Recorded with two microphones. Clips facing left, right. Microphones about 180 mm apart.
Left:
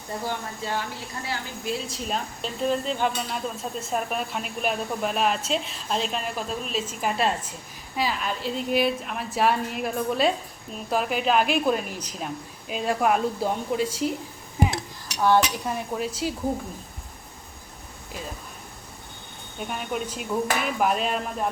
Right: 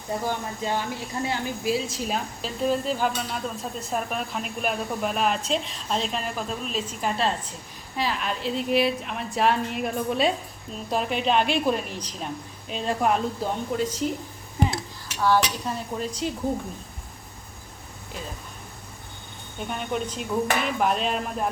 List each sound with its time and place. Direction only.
0.3 s speech: 15° right (ahead or behind)
1.6 s speech: 5° right (ahead or behind)
15.0 s cutlery: 20° left (ahead or behind)
16.0 s speech: 5° left (ahead or behind)
19.5 s speech: 5° left (ahead or behind)